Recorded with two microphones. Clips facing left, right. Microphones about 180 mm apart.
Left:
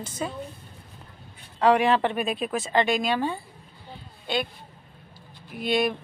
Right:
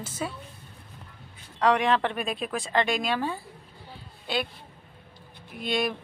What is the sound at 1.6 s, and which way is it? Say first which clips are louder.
A woman's voice: left 3 dB; 5° left (ahead or behind).